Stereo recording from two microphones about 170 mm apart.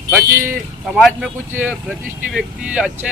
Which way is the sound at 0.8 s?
Centre (ahead or behind).